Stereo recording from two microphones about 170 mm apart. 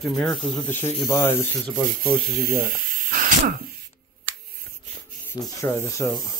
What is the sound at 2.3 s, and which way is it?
Speech, 65° right (ahead or behind).